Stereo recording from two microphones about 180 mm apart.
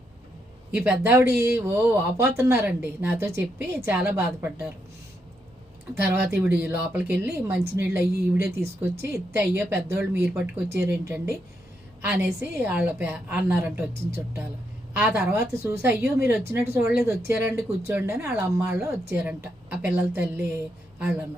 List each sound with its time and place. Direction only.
0.7 s speech: 10° right (ahead or behind)
5.9 s speech: 10° right (ahead or behind)
14.9 s speech: 10° right (ahead or behind)